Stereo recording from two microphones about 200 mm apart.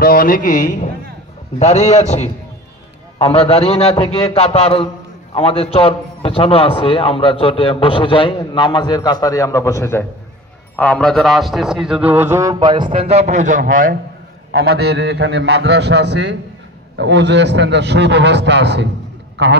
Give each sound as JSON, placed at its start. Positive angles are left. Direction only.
{"t": 0.0, "sound": "a man's voice", "side_deg": 45}
{"t": 14.6, "sound": "a man's voice", "side_deg": -55}